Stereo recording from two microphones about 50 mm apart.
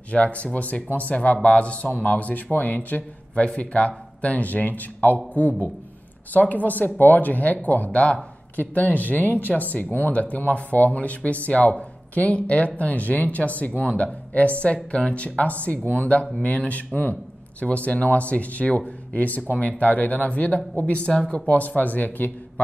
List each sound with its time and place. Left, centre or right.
0.1 s speech: left
3.4 s speech: left
6.5 s speech: left